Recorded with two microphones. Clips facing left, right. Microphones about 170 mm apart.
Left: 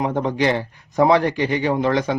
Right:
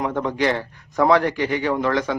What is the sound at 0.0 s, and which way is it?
Speech, 25° left (ahead or behind).